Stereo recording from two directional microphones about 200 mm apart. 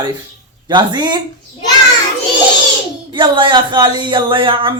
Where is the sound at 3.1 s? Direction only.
25° right (ahead or behind).